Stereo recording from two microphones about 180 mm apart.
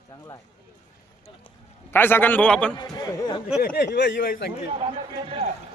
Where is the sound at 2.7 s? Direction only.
20° left (ahead or behind).